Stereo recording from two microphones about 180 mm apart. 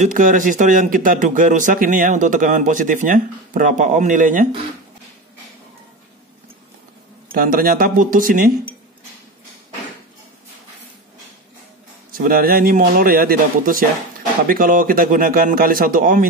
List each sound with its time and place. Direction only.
0.0 s speech: 45° right (ahead or behind)
7.3 s speech: 55° right (ahead or behind)
12.1 s speech: 55° right (ahead or behind)